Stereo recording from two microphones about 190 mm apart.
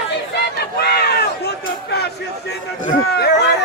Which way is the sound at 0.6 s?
60° left (ahead or behind).